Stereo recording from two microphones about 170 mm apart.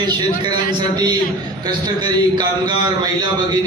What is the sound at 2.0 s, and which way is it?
A man's voice, 25° right (ahead or behind).